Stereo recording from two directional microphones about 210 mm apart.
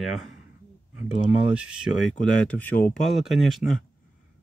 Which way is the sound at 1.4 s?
5° right (ahead or behind).